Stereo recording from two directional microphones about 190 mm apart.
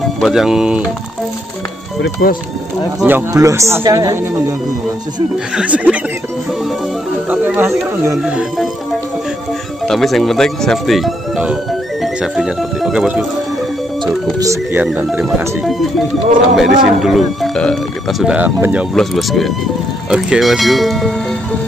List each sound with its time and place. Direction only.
0.2 s speech: centre (ahead or behind)
2.0 s speech: 65° left (ahead or behind)
3.0 s speech: 10° right (ahead or behind)
5.6 s speech: 5° right (ahead or behind)
7.2 s speech: 10° right (ahead or behind)
9.8 s speech: centre (ahead or behind)
12.0 s music: 5° right (ahead or behind)
14.4 s speech: 15° right (ahead or behind)
14.9 s speech: 5° right (ahead or behind)